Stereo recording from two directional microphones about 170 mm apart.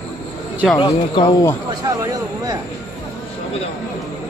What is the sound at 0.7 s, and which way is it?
Speech, 25° left (ahead or behind).